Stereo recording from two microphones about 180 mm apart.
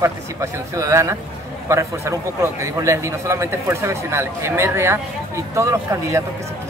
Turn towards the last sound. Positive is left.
turn(degrees=-15)  # may be behind; listen again after turning